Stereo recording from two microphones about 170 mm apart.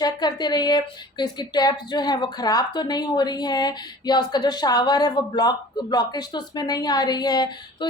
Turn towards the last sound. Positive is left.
turn(degrees=25)  # may be behind; listen again after turning